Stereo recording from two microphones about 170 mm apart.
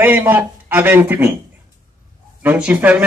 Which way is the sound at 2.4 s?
10° right (ahead or behind).